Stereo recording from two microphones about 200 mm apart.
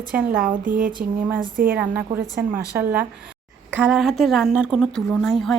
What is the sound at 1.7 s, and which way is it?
A woman's voice, 10° right (ahead or behind).